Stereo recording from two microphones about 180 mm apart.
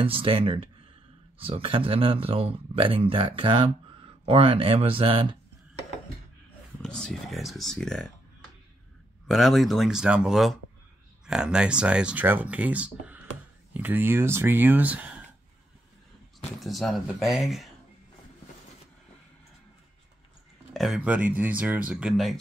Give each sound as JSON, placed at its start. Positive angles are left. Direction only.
{"t": 0.0, "sound": "speech", "side_deg": -30}
{"t": 6.8, "sound": "speech", "side_deg": 5}
{"t": 9.3, "sound": "speech", "side_deg": 0}
{"t": 16.5, "sound": "speech", "side_deg": 0}
{"t": 20.7, "sound": "speech", "side_deg": 0}